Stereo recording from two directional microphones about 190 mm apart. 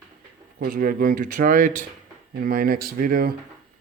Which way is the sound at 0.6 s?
45° right (ahead or behind).